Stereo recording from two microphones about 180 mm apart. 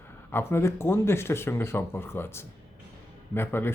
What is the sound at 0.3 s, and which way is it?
Speech, 15° left (ahead or behind).